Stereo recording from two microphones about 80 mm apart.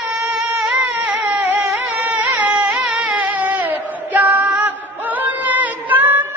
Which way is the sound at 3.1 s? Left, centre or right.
Centre.